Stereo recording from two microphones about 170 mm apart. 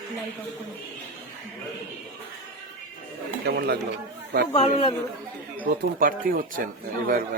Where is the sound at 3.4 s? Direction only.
75° right (ahead or behind).